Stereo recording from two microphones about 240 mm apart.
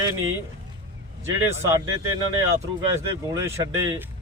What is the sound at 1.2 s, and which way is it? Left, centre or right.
Speech, centre.